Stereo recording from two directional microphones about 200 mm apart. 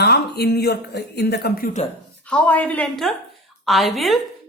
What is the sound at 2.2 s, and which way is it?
A woman's voice, 5° left (ahead or behind).